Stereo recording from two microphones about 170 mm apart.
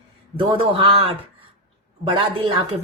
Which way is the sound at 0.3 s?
35° right (ahead or behind).